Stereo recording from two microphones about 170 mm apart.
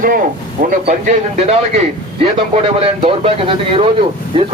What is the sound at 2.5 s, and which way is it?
A man's voice, 35° right (ahead or behind).